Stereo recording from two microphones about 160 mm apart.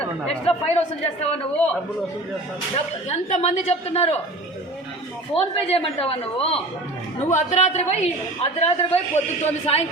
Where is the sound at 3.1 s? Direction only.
45° left (ahead or behind).